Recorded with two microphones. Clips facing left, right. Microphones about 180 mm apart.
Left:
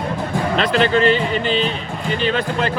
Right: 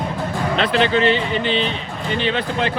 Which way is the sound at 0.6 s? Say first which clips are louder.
Left 1 dB; 45° left (ahead or behind).